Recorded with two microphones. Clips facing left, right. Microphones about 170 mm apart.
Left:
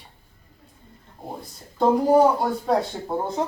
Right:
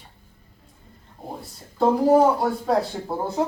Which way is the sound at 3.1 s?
15° left (ahead or behind).